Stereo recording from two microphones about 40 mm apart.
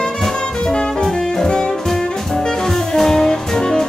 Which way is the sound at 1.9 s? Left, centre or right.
Centre.